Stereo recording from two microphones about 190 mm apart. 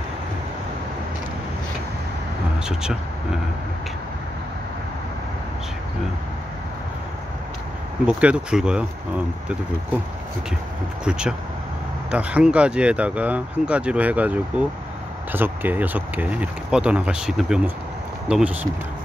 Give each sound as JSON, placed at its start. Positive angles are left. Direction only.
{"t": 2.6, "sound": "speech", "side_deg": -5}
{"t": 8.1, "sound": "speech", "side_deg": -5}
{"t": 11.1, "sound": "speech", "side_deg": -5}